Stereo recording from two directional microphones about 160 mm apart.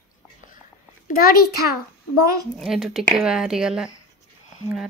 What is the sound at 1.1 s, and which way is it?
Speech, 60° left (ahead or behind).